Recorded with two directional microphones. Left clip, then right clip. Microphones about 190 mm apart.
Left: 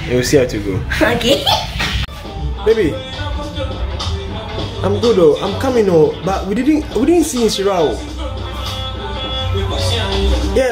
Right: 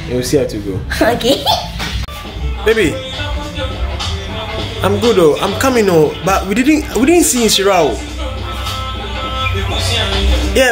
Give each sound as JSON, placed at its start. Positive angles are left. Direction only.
{"t": 0.1, "sound": "speech", "side_deg": 0}
{"t": 0.9, "sound": "speech", "side_deg": -60}
{"t": 2.6, "sound": "speech", "side_deg": 5}
{"t": 4.8, "sound": "speech", "side_deg": 5}
{"t": 10.6, "sound": "speech", "side_deg": 5}